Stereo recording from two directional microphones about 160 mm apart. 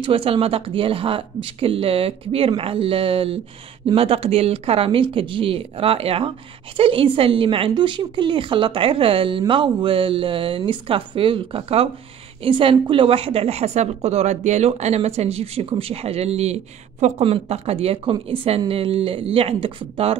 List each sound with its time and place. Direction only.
0.0 s a woman's voice: 35° right (ahead or behind)